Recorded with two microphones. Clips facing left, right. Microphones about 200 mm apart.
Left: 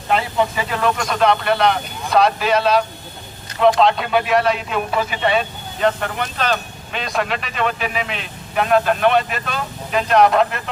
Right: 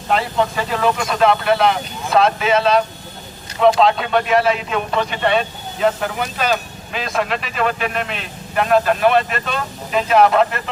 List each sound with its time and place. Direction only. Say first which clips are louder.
0.1 s speech: even; centre (ahead or behind)